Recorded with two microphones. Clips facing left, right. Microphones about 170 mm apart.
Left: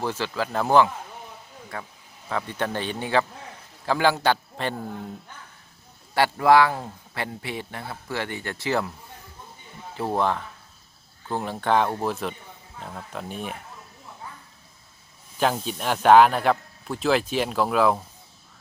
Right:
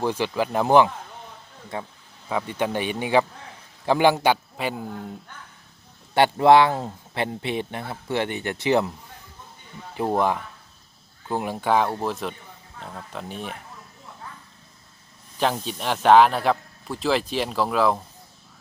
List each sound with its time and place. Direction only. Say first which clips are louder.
0.0 s a man's voice: right 4 dB; 15° right (ahead or behind)
2.3 s a man's voice: right 3 dB; 10° right (ahead or behind)
6.1 s speech: right 2 dB; 25° right (ahead or behind)
9.9 s a man's voice: right 2 dB; 15° right (ahead or behind)
11.9 s a man's voice: even; centre (ahead or behind)
15.4 s a man's voice: even; 5° left (ahead or behind)